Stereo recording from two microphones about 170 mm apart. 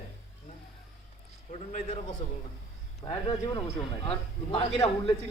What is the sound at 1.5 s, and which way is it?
Speech, 45° left (ahead or behind).